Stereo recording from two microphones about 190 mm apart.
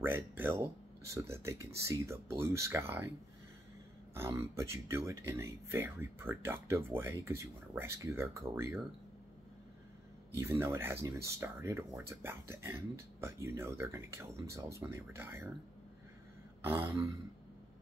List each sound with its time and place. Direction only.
0.0 s speech: 10° right (ahead or behind)
4.1 s speech: 15° right (ahead or behind)
10.4 s speech: 15° right (ahead or behind)
16.6 s speech: 10° right (ahead or behind)